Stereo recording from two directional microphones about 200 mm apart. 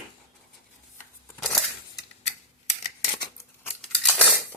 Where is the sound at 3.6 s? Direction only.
10° left (ahead or behind).